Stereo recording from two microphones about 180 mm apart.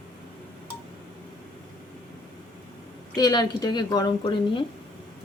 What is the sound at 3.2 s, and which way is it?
A woman's voice, 20° left (ahead or behind).